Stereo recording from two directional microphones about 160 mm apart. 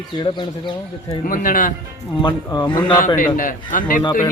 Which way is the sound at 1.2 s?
60° left (ahead or behind).